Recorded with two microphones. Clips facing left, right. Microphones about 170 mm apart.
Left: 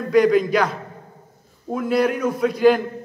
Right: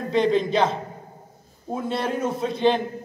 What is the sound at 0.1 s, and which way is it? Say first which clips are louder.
A man's voice: left 5 dB; 25° right (ahead or behind).